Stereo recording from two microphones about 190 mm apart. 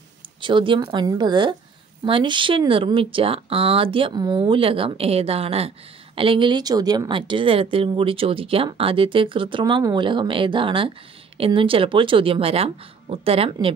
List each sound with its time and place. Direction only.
0.4 s a woman's voice: 25° right (ahead or behind)